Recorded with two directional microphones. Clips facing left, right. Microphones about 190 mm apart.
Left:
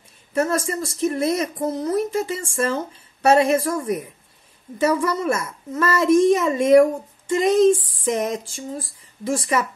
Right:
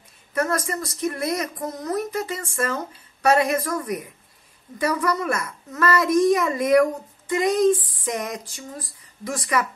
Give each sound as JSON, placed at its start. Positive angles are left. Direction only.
{"t": 0.3, "sound": "a woman's voice", "side_deg": 25}